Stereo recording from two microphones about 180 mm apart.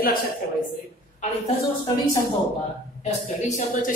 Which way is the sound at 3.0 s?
40° left (ahead or behind).